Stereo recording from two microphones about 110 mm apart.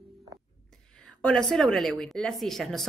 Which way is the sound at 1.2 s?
5° left (ahead or behind).